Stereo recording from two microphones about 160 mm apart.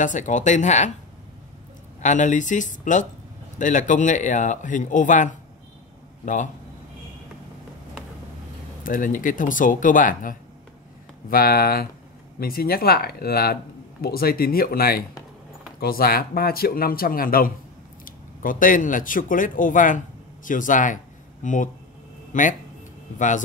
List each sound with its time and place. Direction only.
0.0 s speech: 50° left (ahead or behind)
2.0 s speech: 50° left (ahead or behind)
8.8 s speech: 55° left (ahead or behind)
11.2 s speech: 65° left (ahead or behind); by 23.4 s 50° left (ahead or behind)